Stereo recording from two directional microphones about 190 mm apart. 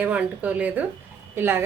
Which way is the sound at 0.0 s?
10° right (ahead or behind).